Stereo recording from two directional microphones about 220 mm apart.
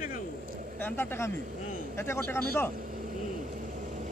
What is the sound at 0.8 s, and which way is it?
Speech, 10° left (ahead or behind).